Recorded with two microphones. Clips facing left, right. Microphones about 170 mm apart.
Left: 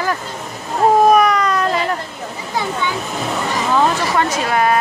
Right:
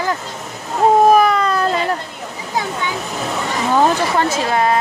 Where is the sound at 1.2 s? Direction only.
30° right (ahead or behind).